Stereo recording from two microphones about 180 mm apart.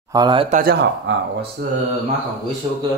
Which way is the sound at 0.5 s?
55° right (ahead or behind).